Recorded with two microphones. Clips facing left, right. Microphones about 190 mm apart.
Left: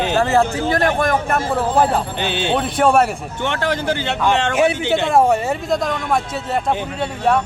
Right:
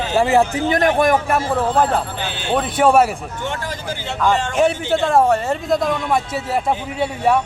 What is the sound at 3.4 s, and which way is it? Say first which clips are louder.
Speech: left 8 dB; 75° left (ahead or behind).